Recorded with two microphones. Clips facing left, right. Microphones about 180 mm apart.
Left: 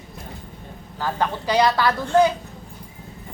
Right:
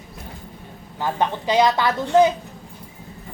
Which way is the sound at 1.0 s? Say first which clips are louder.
Right 2 dB; 20° right (ahead or behind).